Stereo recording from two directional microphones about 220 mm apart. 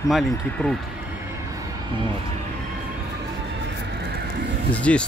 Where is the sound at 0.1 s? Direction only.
Centre (ahead or behind).